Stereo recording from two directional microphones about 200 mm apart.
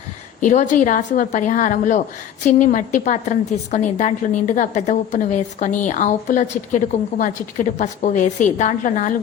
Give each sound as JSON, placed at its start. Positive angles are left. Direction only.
{"t": 0.3, "sound": "a woman's voice", "side_deg": 40}